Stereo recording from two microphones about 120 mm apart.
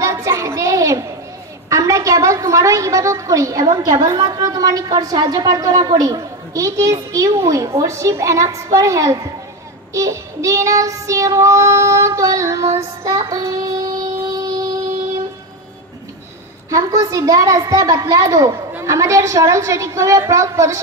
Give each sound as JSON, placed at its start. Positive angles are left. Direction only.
{"t": 0.0, "sound": "a sound", "side_deg": -25}
{"t": 1.7, "sound": "a woman's voice", "side_deg": -25}
{"t": 16.7, "sound": "a woman's voice", "side_deg": -30}